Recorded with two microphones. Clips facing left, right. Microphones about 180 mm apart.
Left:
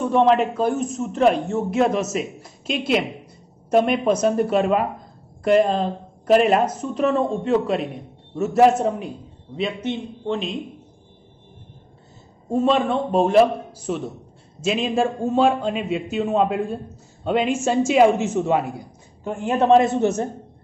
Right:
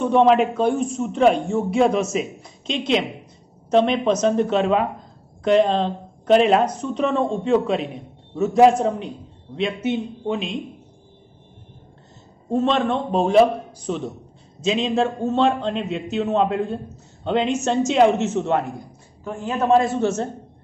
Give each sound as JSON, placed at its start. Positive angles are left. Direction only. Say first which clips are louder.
{"t": 0.0, "sound": "a man's voice", "louder": "right 1 dB", "side_deg": 0}
{"t": 12.4, "sound": "a man's voice", "louder": "left 1 dB", "side_deg": 10}
{"t": 19.7, "sound": "a man's voice", "louder": "left 1 dB", "side_deg": 20}